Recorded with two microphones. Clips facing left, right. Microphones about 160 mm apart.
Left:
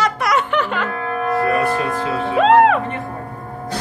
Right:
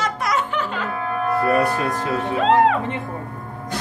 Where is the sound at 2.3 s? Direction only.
70° left (ahead or behind).